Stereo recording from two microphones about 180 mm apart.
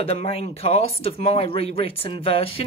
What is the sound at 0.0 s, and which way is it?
Speech, 35° left (ahead or behind).